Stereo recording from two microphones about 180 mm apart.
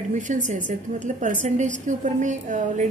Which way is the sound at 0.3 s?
45° right (ahead or behind).